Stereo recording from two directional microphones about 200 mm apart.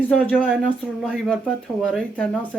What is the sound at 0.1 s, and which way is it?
Speech, 5° left (ahead or behind).